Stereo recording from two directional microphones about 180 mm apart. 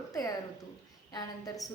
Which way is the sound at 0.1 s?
20° left (ahead or behind).